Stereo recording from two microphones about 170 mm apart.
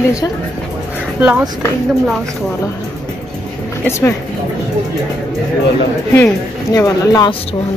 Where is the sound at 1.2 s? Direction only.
10° right (ahead or behind).